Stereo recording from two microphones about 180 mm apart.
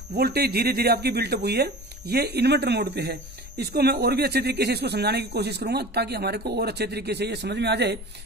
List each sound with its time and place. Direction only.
0.2 s speech: 60° right (ahead or behind)